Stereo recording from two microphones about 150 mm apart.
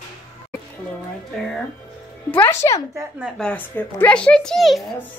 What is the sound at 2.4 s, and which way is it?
Speech, 20° left (ahead or behind).